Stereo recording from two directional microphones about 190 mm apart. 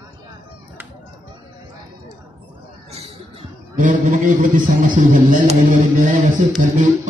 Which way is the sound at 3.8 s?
45° right (ahead or behind).